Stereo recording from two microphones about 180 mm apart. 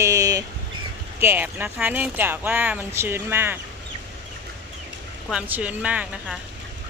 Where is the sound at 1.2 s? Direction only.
10° right (ahead or behind).